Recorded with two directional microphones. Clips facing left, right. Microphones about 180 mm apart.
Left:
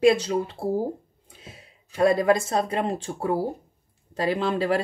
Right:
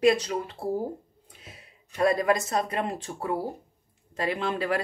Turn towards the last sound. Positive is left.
turn(degrees=30)  # may be behind; listen again after turning